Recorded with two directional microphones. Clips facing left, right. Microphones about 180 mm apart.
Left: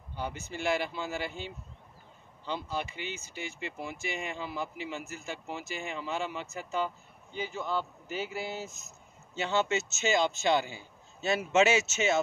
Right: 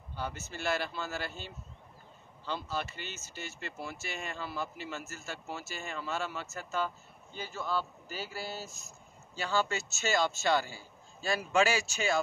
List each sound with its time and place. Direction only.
0.1 s speech: 15° left (ahead or behind)